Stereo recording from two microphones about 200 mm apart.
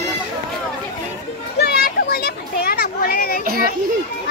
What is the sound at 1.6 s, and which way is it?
Children playing, 50° left (ahead or behind).